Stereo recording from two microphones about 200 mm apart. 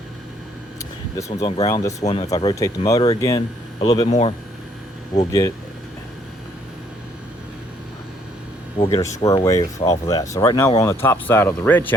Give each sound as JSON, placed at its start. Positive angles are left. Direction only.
{"t": 1.4, "sound": "speech", "side_deg": 20}
{"t": 2.0, "sound": "speech", "side_deg": 35}
{"t": 2.3, "sound": "speech", "side_deg": 20}
{"t": 5.2, "sound": "speech", "side_deg": 15}
{"t": 8.8, "sound": "speech", "side_deg": 15}